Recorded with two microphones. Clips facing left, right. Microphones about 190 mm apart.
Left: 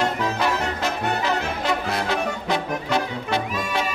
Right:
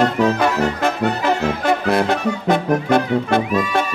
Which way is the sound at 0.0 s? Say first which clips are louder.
Right 7 dB; 55° right (ahead or behind).